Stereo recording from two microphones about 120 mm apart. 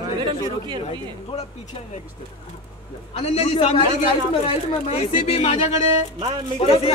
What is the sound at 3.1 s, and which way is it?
Speech, 65° left (ahead or behind).